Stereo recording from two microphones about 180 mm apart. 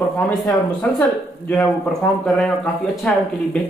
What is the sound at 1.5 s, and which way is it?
Speech, centre (ahead or behind).